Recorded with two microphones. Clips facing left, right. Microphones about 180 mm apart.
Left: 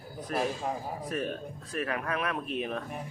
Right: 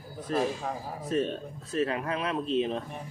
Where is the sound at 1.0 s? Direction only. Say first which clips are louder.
Right 7 dB; 25° right (ahead or behind).